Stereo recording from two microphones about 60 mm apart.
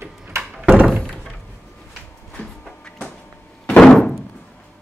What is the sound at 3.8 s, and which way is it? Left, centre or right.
Thunk, centre.